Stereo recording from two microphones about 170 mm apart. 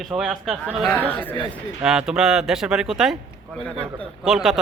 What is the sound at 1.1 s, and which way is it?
Speech, 10° left (ahead or behind).